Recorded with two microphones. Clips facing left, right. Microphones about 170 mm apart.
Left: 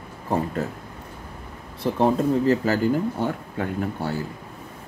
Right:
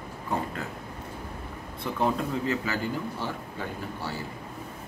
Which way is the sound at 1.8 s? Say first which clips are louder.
Left 7 dB; 35° left (ahead or behind).